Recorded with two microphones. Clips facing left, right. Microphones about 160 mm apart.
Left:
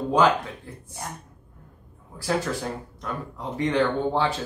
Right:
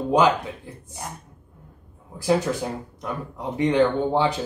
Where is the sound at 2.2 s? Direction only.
15° right (ahead or behind).